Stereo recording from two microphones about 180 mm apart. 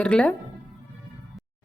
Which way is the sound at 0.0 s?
5° left (ahead or behind).